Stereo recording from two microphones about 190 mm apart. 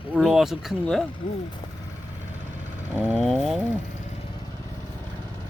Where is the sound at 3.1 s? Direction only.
Centre (ahead or behind).